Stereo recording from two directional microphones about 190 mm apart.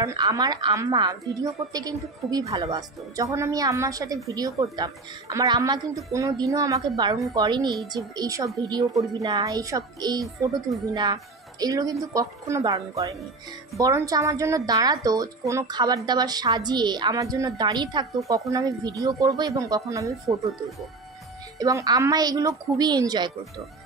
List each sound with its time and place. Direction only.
0.0 s a woman's voice: 15° right (ahead or behind)
10.2 s speech: centre (ahead or behind)
10.9 s a woman's voice: 20° right (ahead or behind)
21.5 s a woman's voice: 20° right (ahead or behind)